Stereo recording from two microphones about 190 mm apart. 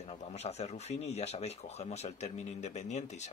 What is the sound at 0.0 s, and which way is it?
Speech, 35° left (ahead or behind).